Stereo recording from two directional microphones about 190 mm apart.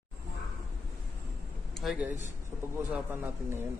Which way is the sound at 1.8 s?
Centre (ahead or behind).